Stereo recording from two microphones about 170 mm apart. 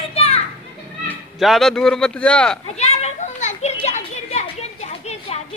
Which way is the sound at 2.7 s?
40° left (ahead or behind).